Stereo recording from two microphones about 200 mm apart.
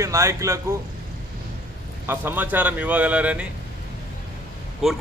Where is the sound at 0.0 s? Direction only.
15° right (ahead or behind).